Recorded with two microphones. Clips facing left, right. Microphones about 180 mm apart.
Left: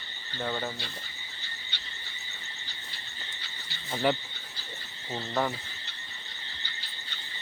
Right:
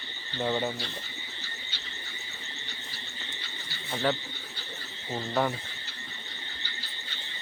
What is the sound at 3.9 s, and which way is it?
Speech, 10° left (ahead or behind).